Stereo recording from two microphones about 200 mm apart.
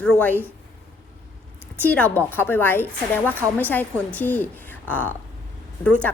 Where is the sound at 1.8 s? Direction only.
10° left (ahead or behind).